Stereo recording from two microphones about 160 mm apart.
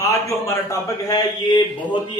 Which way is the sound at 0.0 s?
20° left (ahead or behind).